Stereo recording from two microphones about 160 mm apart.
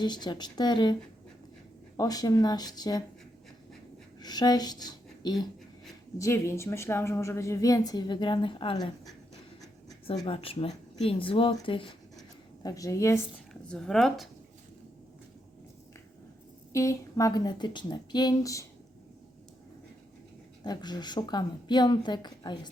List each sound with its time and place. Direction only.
0.0 s a woman's voice: 25° left (ahead or behind)
2.0 s a woman's voice: 25° left (ahead or behind)
4.2 s a woman's voice: 25° left (ahead or behind)
10.2 s speech: 35° left (ahead or behind)
12.6 s a woman's voice: 20° left (ahead or behind)
13.5 s speech: 5° left (ahead or behind)
16.7 s a woman's voice: 20° left (ahead or behind)
20.7 s a woman's voice: 25° left (ahead or behind)